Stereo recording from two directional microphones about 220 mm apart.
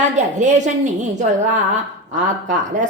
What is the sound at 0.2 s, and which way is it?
A woman's voice, 35° right (ahead or behind).